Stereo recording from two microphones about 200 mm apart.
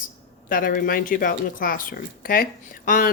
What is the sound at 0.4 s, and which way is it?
Speech, 45° left (ahead or behind).